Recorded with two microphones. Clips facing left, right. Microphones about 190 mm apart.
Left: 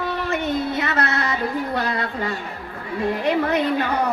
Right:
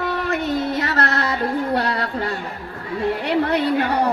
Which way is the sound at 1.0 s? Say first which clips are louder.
Right 2 dB; 40° right (ahead or behind).